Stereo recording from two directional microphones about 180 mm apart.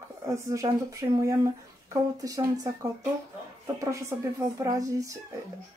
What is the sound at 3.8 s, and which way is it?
Speech, 15° right (ahead or behind).